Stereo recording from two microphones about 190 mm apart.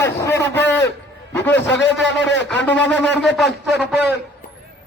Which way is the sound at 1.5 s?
65° left (ahead or behind).